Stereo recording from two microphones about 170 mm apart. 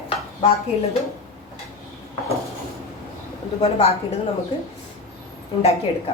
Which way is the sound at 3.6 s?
35° left (ahead or behind).